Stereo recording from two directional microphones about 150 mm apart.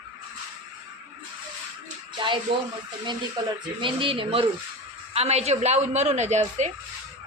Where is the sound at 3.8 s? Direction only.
35° right (ahead or behind); by 6.7 s 50° right (ahead or behind).